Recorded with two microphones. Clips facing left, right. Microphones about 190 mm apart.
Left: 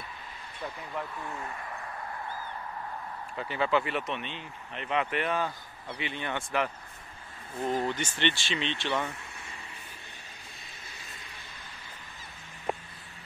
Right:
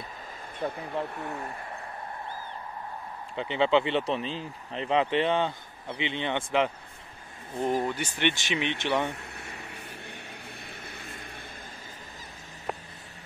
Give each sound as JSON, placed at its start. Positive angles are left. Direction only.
{"t": 0.6, "sound": "speech", "side_deg": -55}
{"t": 1.1, "sound": "speech", "side_deg": -40}
{"t": 3.3, "sound": "speech", "side_deg": -25}
{"t": 7.8, "sound": "speech", "side_deg": -10}
{"t": 9.4, "sound": "vehicle", "side_deg": -70}
{"t": 10.9, "sound": "vehicle", "side_deg": -55}